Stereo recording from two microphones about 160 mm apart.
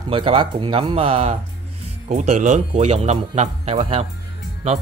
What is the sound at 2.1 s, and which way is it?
A man's voice, 50° right (ahead or behind).